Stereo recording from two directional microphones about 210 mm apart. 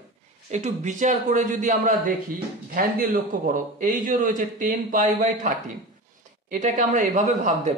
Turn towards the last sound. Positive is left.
turn(degrees=-35)  # may be behind; listen again after turning